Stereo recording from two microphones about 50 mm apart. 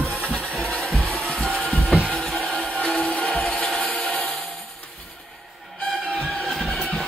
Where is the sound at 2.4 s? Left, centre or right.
Right.